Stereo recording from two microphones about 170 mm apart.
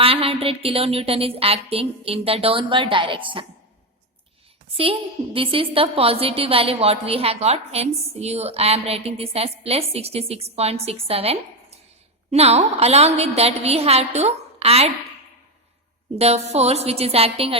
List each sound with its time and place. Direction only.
0.0 s a woman's voice: 35° right (ahead or behind)
4.7 s a woman's voice: 35° right (ahead or behind)
16.1 s a woman's voice: 40° right (ahead or behind)